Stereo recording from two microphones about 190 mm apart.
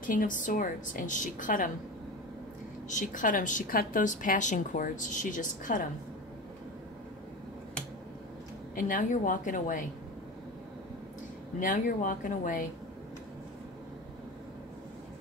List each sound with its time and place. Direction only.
0.0 s a woman's voice: 45° left (ahead or behind)
2.9 s a woman's voice: 40° left (ahead or behind)
8.7 s a woman's voice: 45° left (ahead or behind)
11.6 s a woman's voice: 45° left (ahead or behind)